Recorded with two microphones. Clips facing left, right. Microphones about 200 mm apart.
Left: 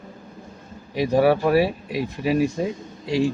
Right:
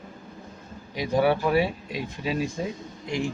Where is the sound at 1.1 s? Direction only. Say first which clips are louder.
Left 4 dB; 40° left (ahead or behind).